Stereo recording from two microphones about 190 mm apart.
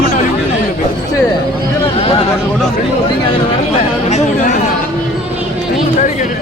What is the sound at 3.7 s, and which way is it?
Speech, 35° left (ahead or behind).